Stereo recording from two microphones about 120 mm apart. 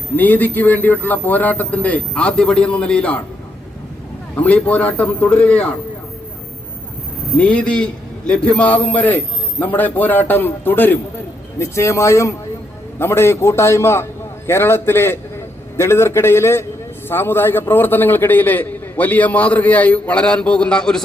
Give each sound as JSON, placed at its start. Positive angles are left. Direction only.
{"t": 0.2, "sound": "a man's voice", "side_deg": 15}
{"t": 4.4, "sound": "a man's voice", "side_deg": 10}
{"t": 7.3, "sound": "a man's voice", "side_deg": 10}